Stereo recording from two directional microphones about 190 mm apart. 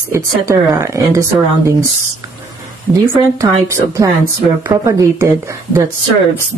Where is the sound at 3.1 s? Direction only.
15° right (ahead or behind).